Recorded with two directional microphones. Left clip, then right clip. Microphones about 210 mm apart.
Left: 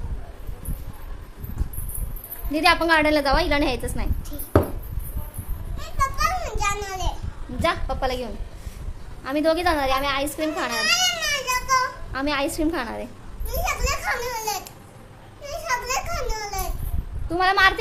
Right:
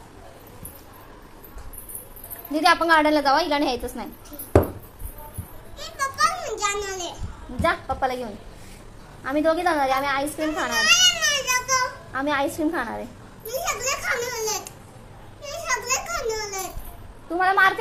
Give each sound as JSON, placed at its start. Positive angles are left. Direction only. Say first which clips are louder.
{"t": 2.5, "sound": "a woman's voice", "louder": "right 1 dB", "side_deg": 10}
{"t": 5.9, "sound": "a sound", "louder": "even", "side_deg": 15}
{"t": 7.6, "sound": "a woman's voice", "louder": "right 1 dB", "side_deg": 5}
{"t": 9.2, "sound": "baby cry", "louder": "even", "side_deg": 5}
{"t": 15.4, "sound": "a sound", "louder": "left 1 dB", "side_deg": 15}
{"t": 17.3, "sound": "a woman's voice", "louder": "even", "side_deg": 10}